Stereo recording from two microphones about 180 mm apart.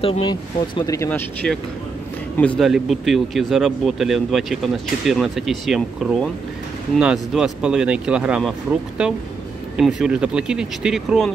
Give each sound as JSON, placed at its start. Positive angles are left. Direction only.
{"t": 0.0, "sound": "speech", "side_deg": 30}